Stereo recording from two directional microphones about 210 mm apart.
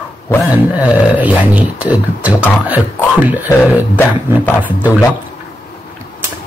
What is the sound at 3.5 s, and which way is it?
Speech, 10° left (ahead or behind).